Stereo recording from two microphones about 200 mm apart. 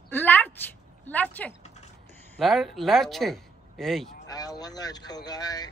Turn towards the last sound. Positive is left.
turn(degrees=20)  # may be behind; listen again after turning